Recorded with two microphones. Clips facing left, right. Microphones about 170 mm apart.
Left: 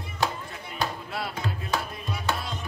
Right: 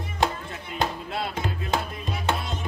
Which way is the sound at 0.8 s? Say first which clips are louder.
Right 3 dB; 25° right (ahead or behind).